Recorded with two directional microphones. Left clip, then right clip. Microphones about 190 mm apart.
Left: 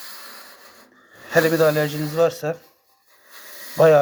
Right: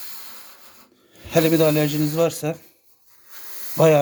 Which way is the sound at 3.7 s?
30° right (ahead or behind).